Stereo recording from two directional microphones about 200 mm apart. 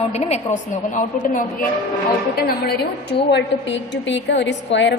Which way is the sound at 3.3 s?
60° left (ahead or behind).